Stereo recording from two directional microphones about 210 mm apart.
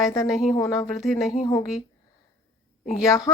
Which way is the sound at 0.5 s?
15° left (ahead or behind).